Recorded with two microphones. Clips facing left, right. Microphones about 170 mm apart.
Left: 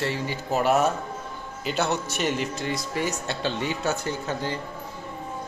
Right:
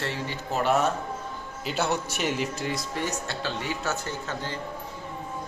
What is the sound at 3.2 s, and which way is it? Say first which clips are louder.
Speech: left 4 dB; 20° left (ahead or behind).